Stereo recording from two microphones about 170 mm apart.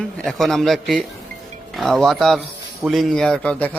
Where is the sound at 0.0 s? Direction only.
Centre (ahead or behind).